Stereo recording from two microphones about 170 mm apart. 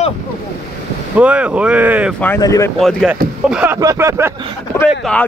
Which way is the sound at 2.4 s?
20° left (ahead or behind).